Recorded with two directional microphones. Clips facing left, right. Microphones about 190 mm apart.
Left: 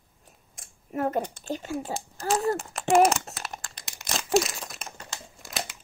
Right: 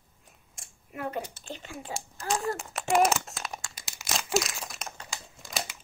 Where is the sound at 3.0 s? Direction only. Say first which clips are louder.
Left 3 dB; centre (ahead or behind).